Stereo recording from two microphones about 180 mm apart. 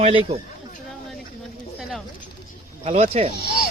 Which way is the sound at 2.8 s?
40° right (ahead or behind).